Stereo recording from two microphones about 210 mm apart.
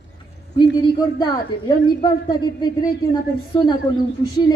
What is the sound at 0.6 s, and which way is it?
Speech, 20° left (ahead or behind).